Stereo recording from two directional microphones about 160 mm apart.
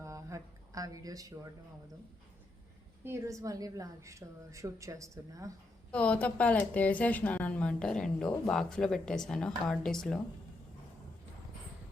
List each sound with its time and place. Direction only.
0.0 s a sound: 20° right (ahead or behind)
3.0 s a woman's voice: 15° right (ahead or behind)
5.9 s a woman's voice: 10° left (ahead or behind)